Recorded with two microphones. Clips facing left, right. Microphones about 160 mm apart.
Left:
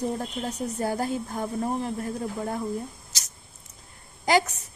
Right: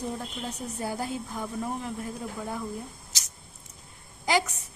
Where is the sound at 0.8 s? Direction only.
50° left (ahead or behind).